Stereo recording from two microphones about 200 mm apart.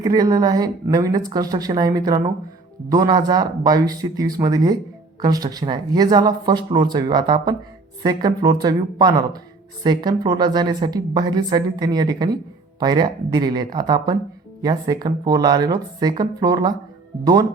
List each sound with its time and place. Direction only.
0.0 s a woman's voice: 20° right (ahead or behind)